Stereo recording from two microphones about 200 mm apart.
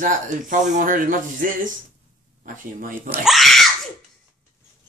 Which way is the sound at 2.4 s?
40° right (ahead or behind).